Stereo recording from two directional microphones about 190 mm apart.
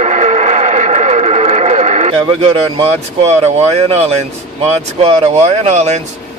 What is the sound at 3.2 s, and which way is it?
Speech, 35° right (ahead or behind).